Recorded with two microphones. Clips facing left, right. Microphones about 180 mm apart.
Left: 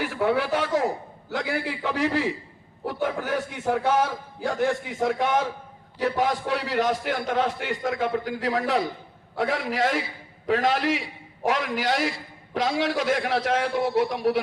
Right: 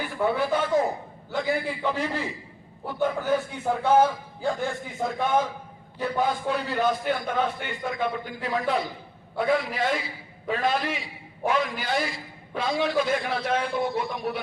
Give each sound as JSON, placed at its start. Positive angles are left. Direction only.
{"t": 0.0, "sound": "a man's voice", "side_deg": 80}